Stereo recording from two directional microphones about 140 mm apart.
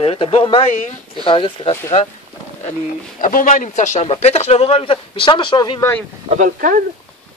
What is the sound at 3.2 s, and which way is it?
Speech, 75° left (ahead or behind).